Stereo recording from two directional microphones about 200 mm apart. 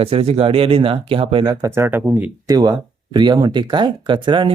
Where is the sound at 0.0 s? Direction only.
30° right (ahead or behind); by 2.6 s 10° right (ahead or behind).